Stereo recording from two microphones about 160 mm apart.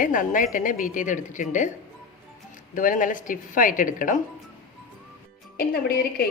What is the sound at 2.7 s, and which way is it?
A woman's voice, 55° left (ahead or behind).